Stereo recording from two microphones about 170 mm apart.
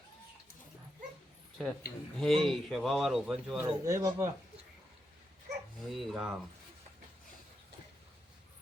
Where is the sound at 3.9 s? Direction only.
20° right (ahead or behind).